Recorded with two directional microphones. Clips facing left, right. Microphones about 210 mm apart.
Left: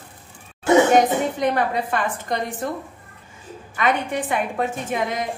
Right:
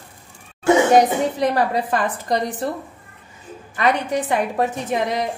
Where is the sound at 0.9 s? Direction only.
35° right (ahead or behind).